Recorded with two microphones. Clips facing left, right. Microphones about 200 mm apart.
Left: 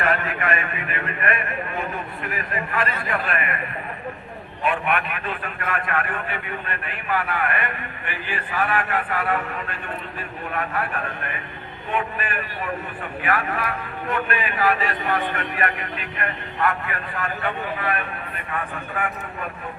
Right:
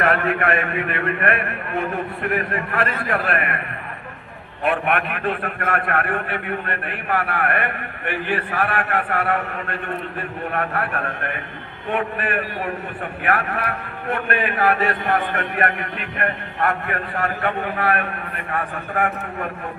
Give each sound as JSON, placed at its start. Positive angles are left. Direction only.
{"t": 0.0, "sound": "a man's voice", "side_deg": -65}
{"t": 4.6, "sound": "a man's voice", "side_deg": -65}
{"t": 18.5, "sound": "a man's voice", "side_deg": -45}